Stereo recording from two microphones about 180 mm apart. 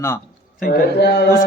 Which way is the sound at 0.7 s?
65° left (ahead or behind).